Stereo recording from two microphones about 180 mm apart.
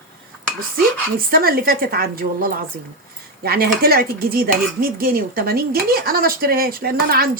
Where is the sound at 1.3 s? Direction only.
55° right (ahead or behind).